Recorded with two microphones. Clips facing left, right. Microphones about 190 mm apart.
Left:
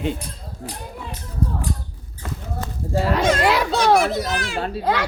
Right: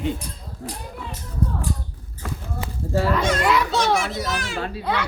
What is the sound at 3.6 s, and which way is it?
A child's voice, 35° left (ahead or behind).